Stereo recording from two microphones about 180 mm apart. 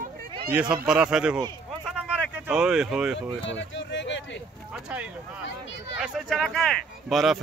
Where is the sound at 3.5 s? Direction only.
90° left.